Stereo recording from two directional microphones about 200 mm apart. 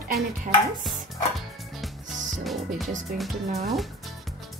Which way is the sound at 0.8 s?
Centre (ahead or behind).